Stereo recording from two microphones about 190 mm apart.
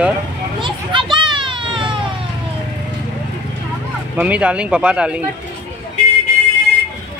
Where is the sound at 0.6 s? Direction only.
25° right (ahead or behind).